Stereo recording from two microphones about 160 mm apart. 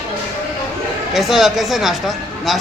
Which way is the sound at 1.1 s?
Centre (ahead or behind).